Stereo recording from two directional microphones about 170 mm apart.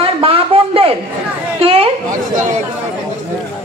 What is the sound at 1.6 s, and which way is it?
Chatter, 35° right (ahead or behind).